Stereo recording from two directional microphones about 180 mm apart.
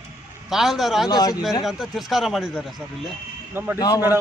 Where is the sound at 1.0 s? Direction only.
20° left (ahead or behind).